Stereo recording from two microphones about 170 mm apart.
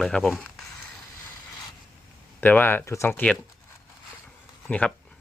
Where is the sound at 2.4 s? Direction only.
10° left (ahead or behind).